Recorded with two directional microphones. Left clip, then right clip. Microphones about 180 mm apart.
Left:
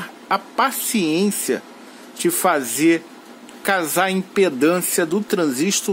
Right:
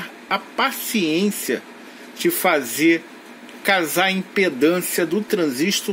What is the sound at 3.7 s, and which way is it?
Speech, 25° left (ahead or behind).